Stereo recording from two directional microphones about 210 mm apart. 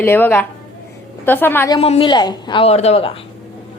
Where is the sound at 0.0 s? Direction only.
10° left (ahead or behind).